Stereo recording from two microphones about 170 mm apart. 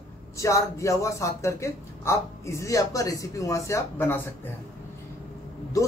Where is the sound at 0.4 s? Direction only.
20° left (ahead or behind).